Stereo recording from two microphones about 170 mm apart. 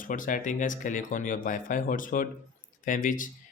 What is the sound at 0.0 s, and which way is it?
Speech, 50° left (ahead or behind).